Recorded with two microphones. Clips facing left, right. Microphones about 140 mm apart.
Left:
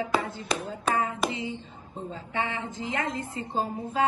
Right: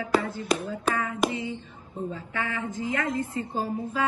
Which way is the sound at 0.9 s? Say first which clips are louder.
Right 1 dB; 25° left (ahead or behind).